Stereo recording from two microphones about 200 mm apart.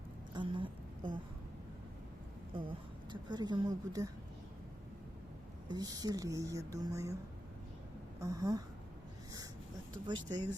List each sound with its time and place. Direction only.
0.3 s a sound: 25° right (ahead or behind)
2.5 s speech: 25° right (ahead or behind)
5.6 s speech: 20° right (ahead or behind)
8.2 s speech: 15° right (ahead or behind)
9.9 s speech: 20° right (ahead or behind)